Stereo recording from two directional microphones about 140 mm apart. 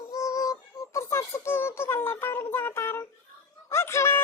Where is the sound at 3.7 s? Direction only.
20° left (ahead or behind).